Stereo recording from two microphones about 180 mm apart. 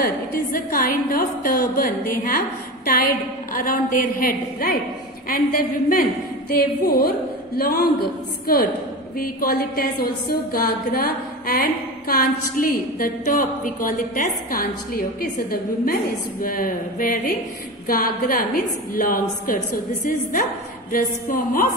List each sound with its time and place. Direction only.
0.0 s a woman's voice: 55° left (ahead or behind)
9.2 s a woman's voice: 55° left (ahead or behind)
20.9 s a woman's voice: 50° left (ahead or behind)